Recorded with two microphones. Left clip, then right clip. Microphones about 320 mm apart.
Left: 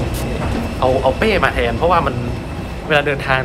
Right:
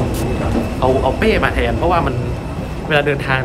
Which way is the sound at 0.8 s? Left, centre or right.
Centre.